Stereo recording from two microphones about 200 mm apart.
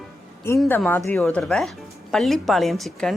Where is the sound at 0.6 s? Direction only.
5° left (ahead or behind).